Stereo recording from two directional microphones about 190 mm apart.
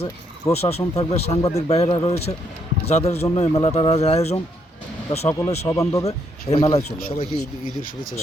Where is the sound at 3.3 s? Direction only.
35° left (ahead or behind).